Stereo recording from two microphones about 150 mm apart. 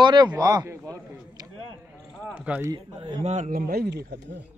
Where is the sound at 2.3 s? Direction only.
10° right (ahead or behind).